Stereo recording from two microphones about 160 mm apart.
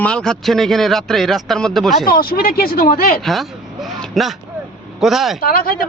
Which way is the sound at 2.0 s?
65° left (ahead or behind).